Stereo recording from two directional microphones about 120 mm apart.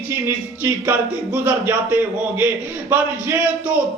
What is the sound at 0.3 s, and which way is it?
Speech, 15° right (ahead or behind).